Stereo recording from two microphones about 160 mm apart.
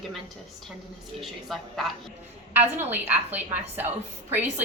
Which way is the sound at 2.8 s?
10° right (ahead or behind).